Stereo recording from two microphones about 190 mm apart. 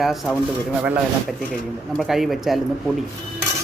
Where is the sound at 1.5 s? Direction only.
Centre (ahead or behind).